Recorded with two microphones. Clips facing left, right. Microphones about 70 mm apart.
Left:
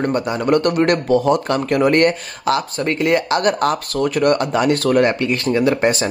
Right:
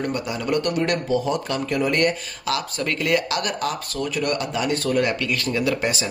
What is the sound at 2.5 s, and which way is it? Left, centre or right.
Speech, left.